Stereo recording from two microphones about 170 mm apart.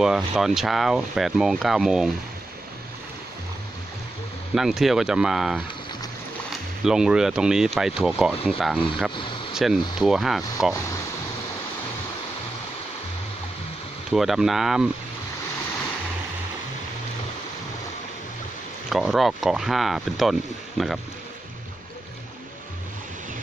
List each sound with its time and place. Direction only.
0.0 s speech: 5° right (ahead or behind)
4.6 s speech: centre (ahead or behind)
14.1 s speech: centre (ahead or behind)
18.9 s speech: centre (ahead or behind)